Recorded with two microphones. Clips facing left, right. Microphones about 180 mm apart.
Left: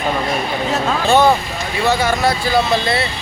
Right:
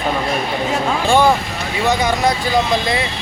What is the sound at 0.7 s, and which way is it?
Speech, 10° right (ahead or behind).